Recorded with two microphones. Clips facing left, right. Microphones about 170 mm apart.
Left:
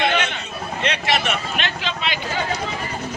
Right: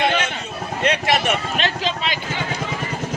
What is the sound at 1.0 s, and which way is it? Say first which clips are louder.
Speech: right 2 dB; 40° right (ahead or behind).